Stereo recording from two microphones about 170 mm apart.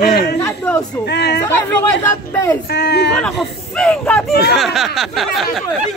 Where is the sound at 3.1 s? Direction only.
5° left (ahead or behind).